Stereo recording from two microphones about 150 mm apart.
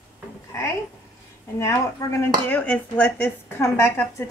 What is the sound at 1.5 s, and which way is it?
Speech, 20° left (ahead or behind).